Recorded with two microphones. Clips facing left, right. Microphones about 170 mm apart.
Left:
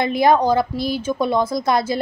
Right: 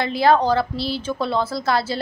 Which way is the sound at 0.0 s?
15° left (ahead or behind).